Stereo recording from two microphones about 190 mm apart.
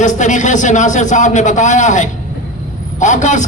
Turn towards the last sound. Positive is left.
turn(degrees=40)  # may be behind; listen again after turning